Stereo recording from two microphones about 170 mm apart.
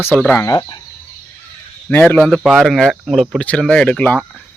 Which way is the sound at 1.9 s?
10° left (ahead or behind).